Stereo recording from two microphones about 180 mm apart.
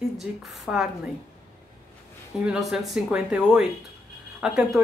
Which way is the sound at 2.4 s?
5° right (ahead or behind).